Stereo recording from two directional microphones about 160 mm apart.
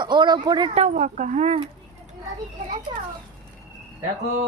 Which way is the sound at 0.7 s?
50° right (ahead or behind).